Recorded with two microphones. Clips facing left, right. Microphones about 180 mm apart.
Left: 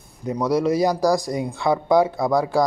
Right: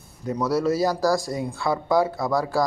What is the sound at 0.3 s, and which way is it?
Speech, 15° left (ahead or behind).